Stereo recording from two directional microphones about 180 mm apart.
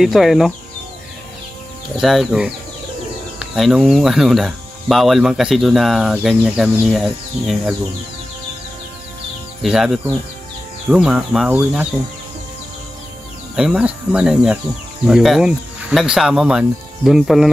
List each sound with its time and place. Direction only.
0.0 s speech: centre (ahead or behind)
2.0 s speech: centre (ahead or behind)
9.6 s speech: centre (ahead or behind)
13.6 s speech: 5° right (ahead or behind)